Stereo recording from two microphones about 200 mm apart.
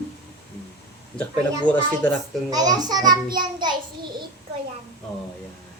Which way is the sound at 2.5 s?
20° right (ahead or behind).